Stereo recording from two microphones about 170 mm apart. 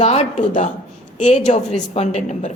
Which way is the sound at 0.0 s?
40° left (ahead or behind).